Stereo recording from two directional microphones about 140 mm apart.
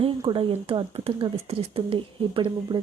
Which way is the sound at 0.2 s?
40° right (ahead or behind).